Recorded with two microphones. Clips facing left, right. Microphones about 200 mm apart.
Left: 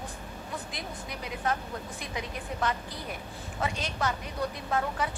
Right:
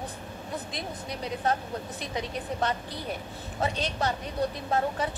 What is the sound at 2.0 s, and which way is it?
Speech, 30° right (ahead or behind).